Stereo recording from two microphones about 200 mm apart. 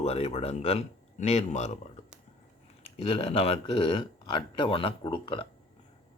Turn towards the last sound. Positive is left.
turn(degrees=25)  # may be behind; listen again after turning